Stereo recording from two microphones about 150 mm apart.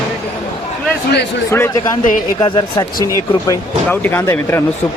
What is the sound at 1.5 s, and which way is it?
Speech, 20° left (ahead or behind).